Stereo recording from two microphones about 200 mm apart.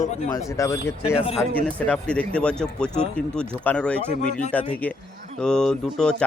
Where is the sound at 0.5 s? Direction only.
15° left (ahead or behind).